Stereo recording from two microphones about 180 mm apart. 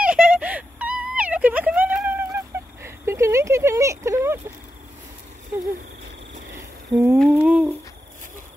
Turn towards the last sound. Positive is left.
turn(degrees=-5)  # may be behind; listen again after turning